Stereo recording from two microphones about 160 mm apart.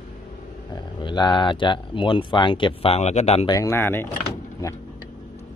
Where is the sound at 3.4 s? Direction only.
20° left (ahead or behind).